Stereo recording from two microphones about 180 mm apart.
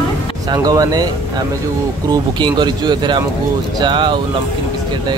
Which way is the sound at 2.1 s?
25° right (ahead or behind).